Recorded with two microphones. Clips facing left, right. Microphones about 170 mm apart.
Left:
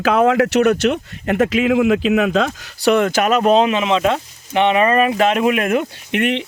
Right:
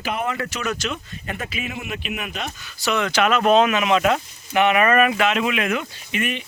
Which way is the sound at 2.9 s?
50° left (ahead or behind).